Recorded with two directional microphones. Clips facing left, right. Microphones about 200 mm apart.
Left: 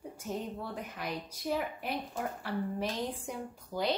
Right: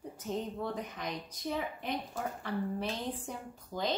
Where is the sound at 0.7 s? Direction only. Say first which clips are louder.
Even; 10° left (ahead or behind).